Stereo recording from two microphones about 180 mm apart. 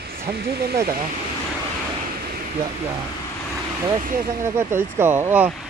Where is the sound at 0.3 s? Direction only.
60° right (ahead or behind).